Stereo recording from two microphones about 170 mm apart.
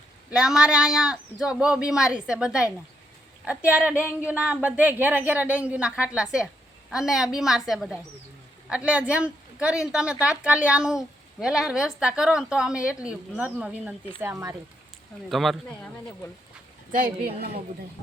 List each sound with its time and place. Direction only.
0.3 s a woman's voice: 5° right (ahead or behind)
3.7 s a woman's voice: 10° right (ahead or behind)
15.3 s a woman's voice: centre (ahead or behind)
16.9 s speech: 55° right (ahead or behind)